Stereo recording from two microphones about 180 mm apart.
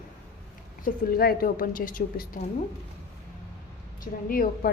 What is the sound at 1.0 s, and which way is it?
A woman's voice, 55° left (ahead or behind).